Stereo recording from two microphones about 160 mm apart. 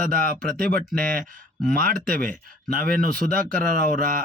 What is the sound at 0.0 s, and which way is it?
Speech, 60° right (ahead or behind).